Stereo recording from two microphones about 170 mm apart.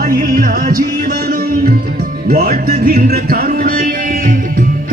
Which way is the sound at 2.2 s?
65° right (ahead or behind).